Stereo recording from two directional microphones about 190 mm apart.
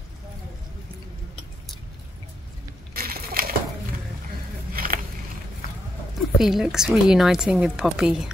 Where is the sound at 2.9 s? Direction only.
50° right (ahead or behind).